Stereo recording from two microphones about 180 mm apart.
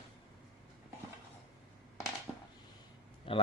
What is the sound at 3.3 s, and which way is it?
Speech, 30° left (ahead or behind).